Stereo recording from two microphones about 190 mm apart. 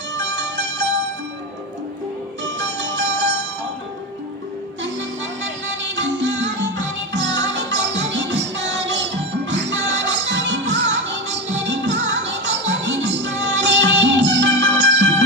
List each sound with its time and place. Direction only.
0.2 s music: 70° right (ahead or behind)
2.4 s music: 70° right (ahead or behind)
4.8 s music: 75° right (ahead or behind)